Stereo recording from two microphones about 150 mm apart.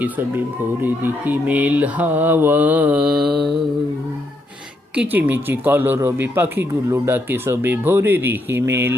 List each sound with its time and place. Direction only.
0.8 s speech: 15° right (ahead or behind)
4.9 s speech: 10° right (ahead or behind)